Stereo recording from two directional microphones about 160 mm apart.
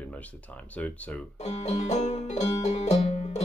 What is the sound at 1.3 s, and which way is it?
Music, 45° left (ahead or behind).